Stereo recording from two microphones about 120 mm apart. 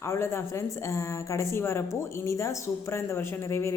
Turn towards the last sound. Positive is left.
turn(degrees=20)  # may be behind; listen again after turning